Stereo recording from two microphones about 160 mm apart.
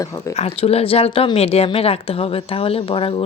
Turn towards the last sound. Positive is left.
turn(degrees=35)  # may be behind; listen again after turning